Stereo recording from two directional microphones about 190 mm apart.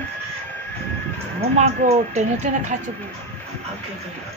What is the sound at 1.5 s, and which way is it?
Speech, 35° right (ahead or behind).